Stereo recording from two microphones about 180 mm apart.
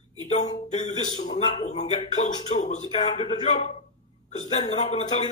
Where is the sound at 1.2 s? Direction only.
40° left (ahead or behind).